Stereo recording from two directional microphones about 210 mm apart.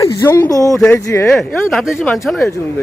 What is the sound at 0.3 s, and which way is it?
Speech, 10° left (ahead or behind).